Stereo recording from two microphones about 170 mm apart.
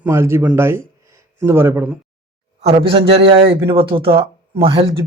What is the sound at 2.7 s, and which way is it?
A man's voice, 30° right (ahead or behind).